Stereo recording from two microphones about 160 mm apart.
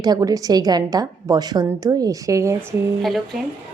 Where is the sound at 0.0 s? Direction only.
25° right (ahead or behind).